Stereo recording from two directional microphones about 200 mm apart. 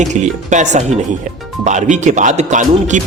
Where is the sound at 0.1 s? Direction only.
35° right (ahead or behind).